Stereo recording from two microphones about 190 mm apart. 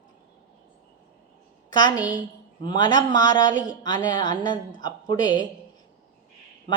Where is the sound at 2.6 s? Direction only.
25° left (ahead or behind).